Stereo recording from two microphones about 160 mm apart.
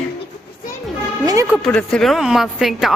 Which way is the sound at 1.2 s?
20° right (ahead or behind).